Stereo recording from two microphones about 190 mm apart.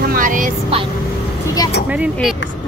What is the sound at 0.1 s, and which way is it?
Vehicle, 45° right (ahead or behind).